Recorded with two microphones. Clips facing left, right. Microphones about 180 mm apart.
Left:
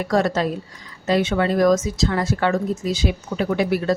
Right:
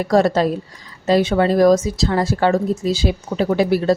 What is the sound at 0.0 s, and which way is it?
A woman's voice, 35° right (ahead or behind).